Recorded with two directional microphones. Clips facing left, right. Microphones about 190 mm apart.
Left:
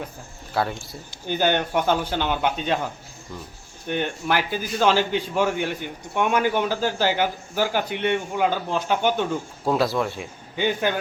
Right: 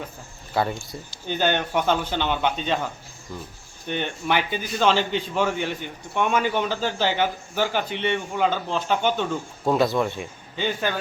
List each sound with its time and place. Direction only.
0.5 s a man's voice: centre (ahead or behind)
10.6 s a man's voice: 15° left (ahead or behind)